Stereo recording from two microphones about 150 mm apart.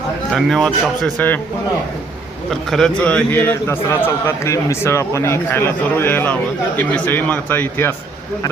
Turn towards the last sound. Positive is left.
turn(degrees=15)  # may be behind; listen again after turning